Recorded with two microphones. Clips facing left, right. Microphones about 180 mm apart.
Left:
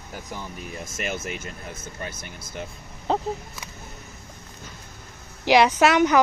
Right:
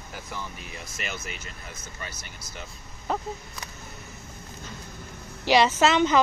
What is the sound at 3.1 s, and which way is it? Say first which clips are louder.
Speech: left 5 dB; 25° left (ahead or behind).